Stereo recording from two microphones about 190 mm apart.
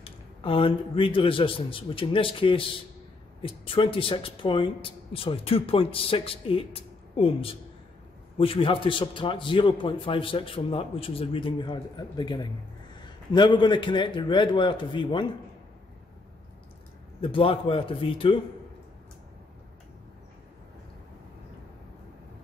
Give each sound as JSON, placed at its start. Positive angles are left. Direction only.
{"t": 0.0, "sound": "speech", "side_deg": 30}
{"t": 17.2, "sound": "speech", "side_deg": 30}